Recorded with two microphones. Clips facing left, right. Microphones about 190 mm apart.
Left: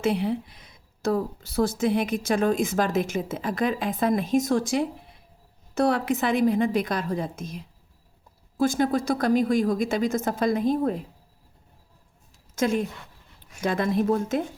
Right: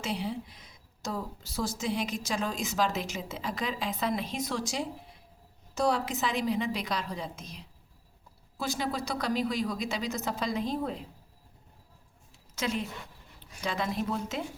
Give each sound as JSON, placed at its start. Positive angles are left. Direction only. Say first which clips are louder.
{"t": 0.0, "sound": "a woman's voice", "louder": "left 9 dB", "side_deg": 55}
{"t": 12.5, "sound": "a woman's voice", "louder": "left 8 dB", "side_deg": 50}